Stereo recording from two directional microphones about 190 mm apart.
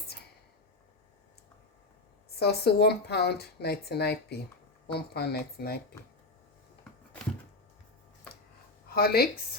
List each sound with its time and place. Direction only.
2.4 s speech: 60° left (ahead or behind)
8.9 s speech: 55° left (ahead or behind)